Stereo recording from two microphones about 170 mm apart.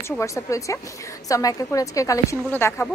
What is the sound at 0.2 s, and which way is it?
A woman's voice, 20° left (ahead or behind).